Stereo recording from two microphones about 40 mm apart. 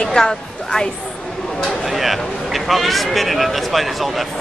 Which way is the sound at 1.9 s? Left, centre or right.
Centre.